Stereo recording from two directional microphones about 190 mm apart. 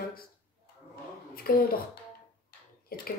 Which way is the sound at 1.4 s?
50° left (ahead or behind).